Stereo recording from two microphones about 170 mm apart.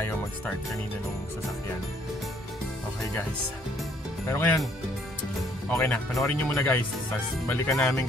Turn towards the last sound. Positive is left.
turn(degrees=5)  # may be behind; listen again after turning